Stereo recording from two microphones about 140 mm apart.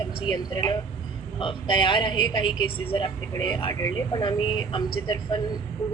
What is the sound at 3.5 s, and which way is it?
Speech, 25° left (ahead or behind).